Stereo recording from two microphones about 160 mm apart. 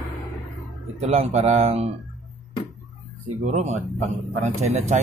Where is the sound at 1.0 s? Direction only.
40° right (ahead or behind).